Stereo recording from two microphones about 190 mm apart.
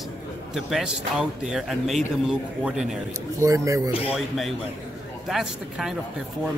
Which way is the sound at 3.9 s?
30° left (ahead or behind).